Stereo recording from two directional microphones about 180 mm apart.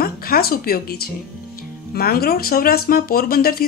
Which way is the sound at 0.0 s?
55° left (ahead or behind).